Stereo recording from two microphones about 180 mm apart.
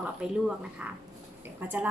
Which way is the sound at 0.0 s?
5° right (ahead or behind).